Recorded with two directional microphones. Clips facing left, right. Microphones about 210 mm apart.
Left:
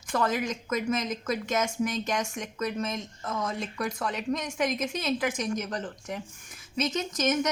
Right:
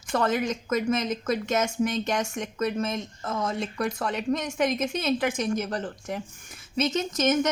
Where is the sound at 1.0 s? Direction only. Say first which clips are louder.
Right 3 dB; 30° right (ahead or behind).